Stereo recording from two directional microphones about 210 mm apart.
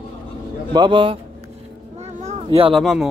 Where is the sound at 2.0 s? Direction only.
30° right (ahead or behind).